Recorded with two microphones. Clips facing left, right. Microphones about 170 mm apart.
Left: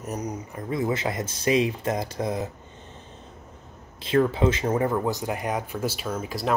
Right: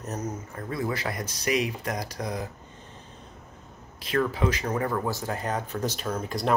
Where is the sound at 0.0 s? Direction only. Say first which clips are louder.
Left 2 dB; 10° left (ahead or behind).